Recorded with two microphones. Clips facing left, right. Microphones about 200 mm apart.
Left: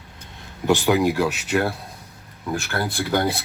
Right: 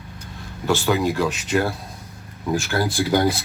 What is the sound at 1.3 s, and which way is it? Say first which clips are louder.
Speech: right 1 dB; 65° left (ahead or behind).